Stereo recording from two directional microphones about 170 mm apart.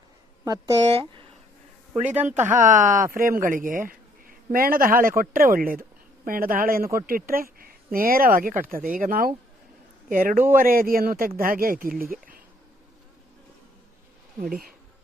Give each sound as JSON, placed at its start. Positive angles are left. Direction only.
{"t": 0.4, "sound": "speech", "side_deg": -20}
{"t": 0.9, "sound": "speech", "side_deg": -35}
{"t": 2.0, "sound": "speech", "side_deg": -10}
{"t": 2.6, "sound": "speech", "side_deg": -50}
{"t": 14.3, "sound": "speech", "side_deg": -55}